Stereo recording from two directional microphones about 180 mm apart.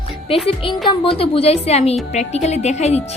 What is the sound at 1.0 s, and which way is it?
A woman's voice, 30° left (ahead or behind).